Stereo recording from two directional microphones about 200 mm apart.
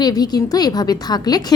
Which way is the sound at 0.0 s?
20° left (ahead or behind).